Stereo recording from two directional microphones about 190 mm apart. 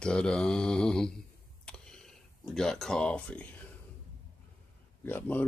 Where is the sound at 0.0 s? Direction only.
5° left (ahead or behind).